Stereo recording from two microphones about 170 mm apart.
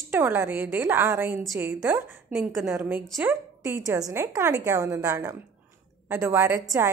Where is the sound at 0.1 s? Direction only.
15° right (ahead or behind).